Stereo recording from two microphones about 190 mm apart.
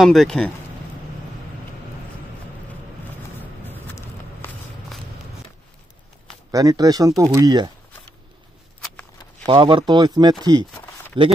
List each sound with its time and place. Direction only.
0.0 s speech: centre (ahead or behind)
3.6 s a sound: 10° left (ahead or behind)
6.5 s speech: 20° right (ahead or behind)
9.5 s speech: 25° right (ahead or behind)